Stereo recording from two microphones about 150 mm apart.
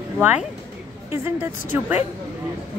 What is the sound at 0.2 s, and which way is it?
A woman's voice, 10° right (ahead or behind).